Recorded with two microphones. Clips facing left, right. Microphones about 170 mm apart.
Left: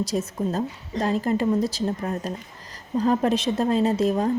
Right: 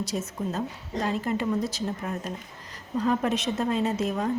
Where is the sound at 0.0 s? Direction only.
35° left (ahead or behind).